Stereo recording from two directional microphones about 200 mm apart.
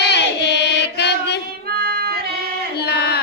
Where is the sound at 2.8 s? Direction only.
55° left (ahead or behind).